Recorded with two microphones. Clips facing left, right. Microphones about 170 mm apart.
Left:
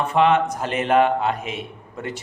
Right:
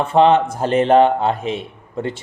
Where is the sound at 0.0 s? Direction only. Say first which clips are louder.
Right 4 dB; 30° right (ahead or behind).